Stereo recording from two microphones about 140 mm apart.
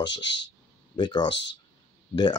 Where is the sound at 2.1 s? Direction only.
30° left (ahead or behind).